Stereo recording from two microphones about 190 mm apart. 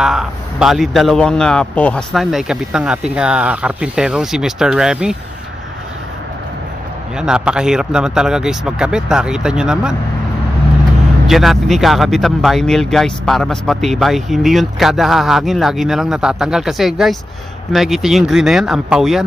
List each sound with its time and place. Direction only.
0.0 s speech: 5° right (ahead or behind)
7.2 s speech: 5° right (ahead or behind)
11.2 s speech: centre (ahead or behind)